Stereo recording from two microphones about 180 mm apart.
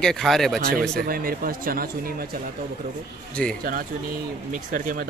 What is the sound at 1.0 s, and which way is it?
Speech, 55° right (ahead or behind).